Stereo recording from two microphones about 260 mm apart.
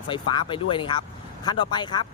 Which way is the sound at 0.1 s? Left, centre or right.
Centre.